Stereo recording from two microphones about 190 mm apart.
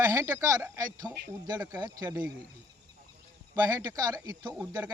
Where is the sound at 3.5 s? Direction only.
15° right (ahead or behind).